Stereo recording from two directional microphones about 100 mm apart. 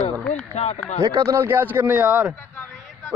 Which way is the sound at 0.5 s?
90° left.